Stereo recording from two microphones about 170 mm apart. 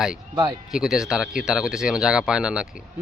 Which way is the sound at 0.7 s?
5° right (ahead or behind).